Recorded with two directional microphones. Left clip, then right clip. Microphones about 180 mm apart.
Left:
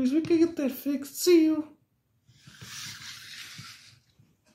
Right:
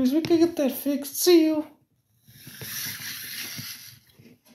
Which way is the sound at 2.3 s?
15° right (ahead or behind).